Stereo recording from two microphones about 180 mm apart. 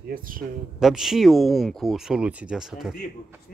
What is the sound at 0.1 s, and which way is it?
Speech, 50° right (ahead or behind).